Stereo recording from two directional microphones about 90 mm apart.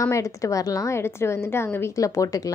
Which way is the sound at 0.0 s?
35° left (ahead or behind).